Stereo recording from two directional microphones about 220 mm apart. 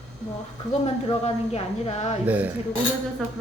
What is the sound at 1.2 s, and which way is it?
Speech, 30° left (ahead or behind).